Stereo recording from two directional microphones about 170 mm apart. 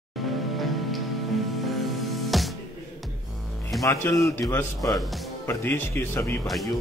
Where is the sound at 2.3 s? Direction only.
Centre (ahead or behind).